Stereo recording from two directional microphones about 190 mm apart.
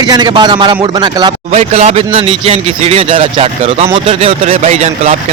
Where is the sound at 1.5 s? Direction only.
35° right (ahead or behind).